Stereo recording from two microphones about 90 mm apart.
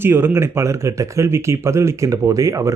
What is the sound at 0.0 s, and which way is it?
Speech, 25° right (ahead or behind).